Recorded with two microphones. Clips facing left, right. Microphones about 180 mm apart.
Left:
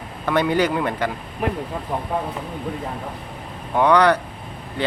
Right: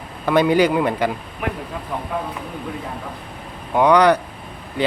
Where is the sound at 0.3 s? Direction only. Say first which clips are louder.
Right 4 dB; 15° right (ahead or behind).